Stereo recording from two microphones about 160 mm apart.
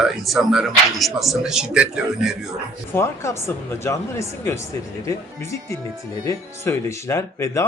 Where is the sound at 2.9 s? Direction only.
15° left (ahead or behind).